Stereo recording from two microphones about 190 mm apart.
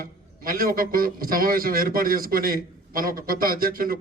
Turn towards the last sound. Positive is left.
turn(degrees=-50)  # may be behind; listen again after turning